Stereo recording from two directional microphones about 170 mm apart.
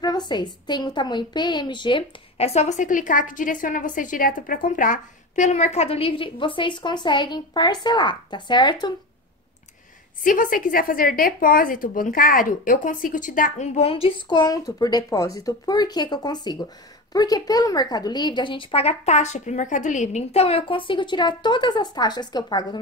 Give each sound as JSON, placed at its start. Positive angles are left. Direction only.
{"t": 0.0, "sound": "a woman's voice", "side_deg": 25}
{"t": 10.2, "sound": "a woman's voice", "side_deg": 50}
{"t": 14.4, "sound": "a woman's voice", "side_deg": 20}